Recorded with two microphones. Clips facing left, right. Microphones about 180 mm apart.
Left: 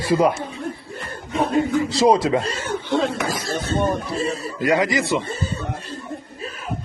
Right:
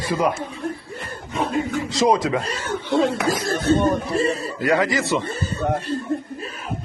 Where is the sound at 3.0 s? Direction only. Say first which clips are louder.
Right 3 dB; 55° right (ahead or behind).